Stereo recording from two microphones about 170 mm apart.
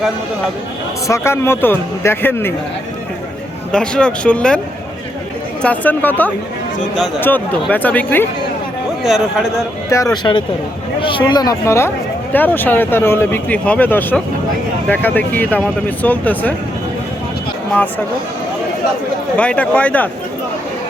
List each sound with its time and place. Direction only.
1.0 s speech: 15° left (ahead or behind)
3.7 s speech: 5° left (ahead or behind)
5.6 s speech: 10° left (ahead or behind)
9.0 s speech: centre (ahead or behind)
9.9 s speech: 20° left (ahead or behind)
19.4 s speech: 10° left (ahead or behind)